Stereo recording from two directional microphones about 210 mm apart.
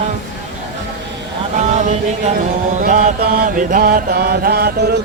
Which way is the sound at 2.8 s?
40° right (ahead or behind).